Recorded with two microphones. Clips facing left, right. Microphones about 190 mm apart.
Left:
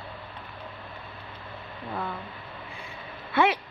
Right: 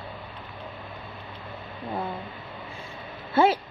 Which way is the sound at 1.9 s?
20° right (ahead or behind).